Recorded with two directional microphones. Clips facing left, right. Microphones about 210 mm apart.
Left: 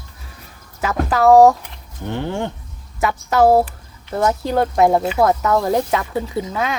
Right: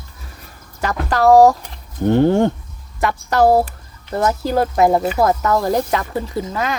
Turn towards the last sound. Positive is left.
turn(degrees=0)  # may be behind; listen again after turning